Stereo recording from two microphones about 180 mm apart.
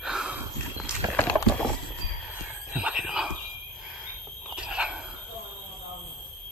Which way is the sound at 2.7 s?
5° right (ahead or behind).